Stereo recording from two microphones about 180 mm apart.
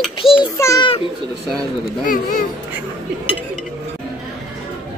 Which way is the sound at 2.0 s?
50° left (ahead or behind).